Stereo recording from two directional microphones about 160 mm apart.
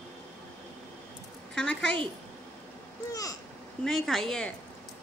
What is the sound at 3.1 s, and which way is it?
Speech, 20° left (ahead or behind).